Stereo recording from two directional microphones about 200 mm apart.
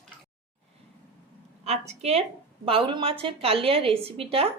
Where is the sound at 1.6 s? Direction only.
30° right (ahead or behind).